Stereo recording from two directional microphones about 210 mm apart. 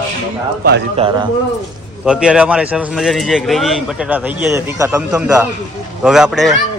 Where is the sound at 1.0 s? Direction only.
25° right (ahead or behind).